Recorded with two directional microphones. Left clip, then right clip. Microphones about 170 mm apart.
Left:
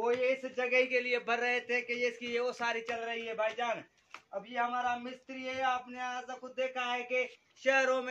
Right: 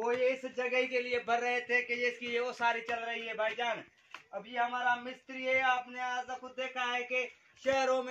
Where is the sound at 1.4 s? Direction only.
30° left (ahead or behind).